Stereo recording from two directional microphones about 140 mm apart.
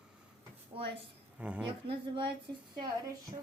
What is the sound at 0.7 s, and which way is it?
Speech, 40° right (ahead or behind).